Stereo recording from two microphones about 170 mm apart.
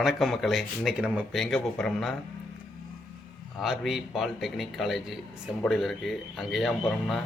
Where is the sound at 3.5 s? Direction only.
Centre (ahead or behind).